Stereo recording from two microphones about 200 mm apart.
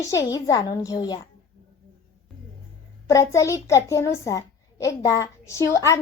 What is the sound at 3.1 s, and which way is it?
A child's voice, 15° left (ahead or behind).